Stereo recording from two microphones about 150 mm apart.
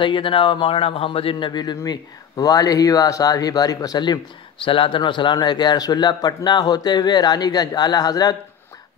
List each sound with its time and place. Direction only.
0.0 s a man's voice: 35° left (ahead or behind)